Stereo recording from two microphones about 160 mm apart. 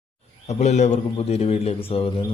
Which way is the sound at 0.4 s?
45° left (ahead or behind).